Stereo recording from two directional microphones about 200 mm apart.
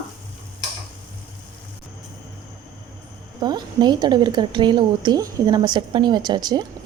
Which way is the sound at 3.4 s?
20° right (ahead or behind).